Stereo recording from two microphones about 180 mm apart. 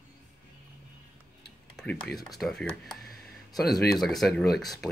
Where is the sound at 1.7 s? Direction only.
5° left (ahead or behind).